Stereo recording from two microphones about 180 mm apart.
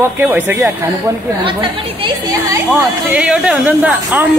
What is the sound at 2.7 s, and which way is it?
Speech, 5° right (ahead or behind).